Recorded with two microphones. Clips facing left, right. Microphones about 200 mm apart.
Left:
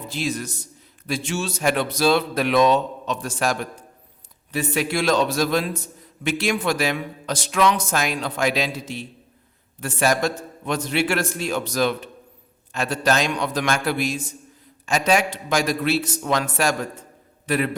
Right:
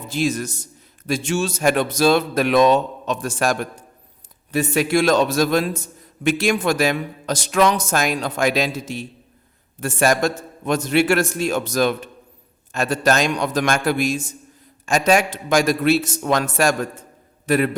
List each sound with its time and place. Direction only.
0.1 s a man's voice: 45° right (ahead or behind)